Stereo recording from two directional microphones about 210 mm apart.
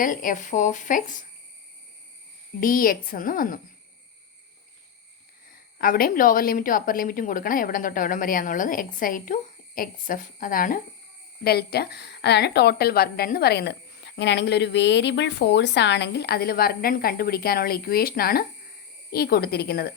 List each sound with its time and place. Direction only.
0.0 s a woman's voice: 40° left (ahead or behind)
2.6 s a woman's voice: 40° left (ahead or behind)
5.8 s a woman's voice: 45° left (ahead or behind)